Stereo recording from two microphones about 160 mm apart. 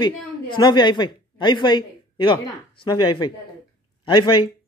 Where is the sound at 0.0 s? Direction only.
30° left (ahead or behind).